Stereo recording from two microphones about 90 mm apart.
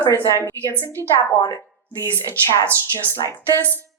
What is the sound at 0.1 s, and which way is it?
A woman's voice, 30° left (ahead or behind).